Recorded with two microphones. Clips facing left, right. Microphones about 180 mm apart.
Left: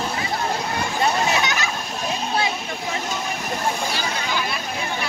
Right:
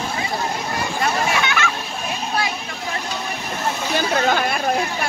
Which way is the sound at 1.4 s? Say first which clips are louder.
Right 2 dB; 40° left (ahead or behind).